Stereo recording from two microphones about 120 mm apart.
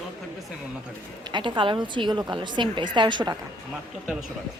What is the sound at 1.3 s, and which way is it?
A woman's voice, 40° right (ahead or behind).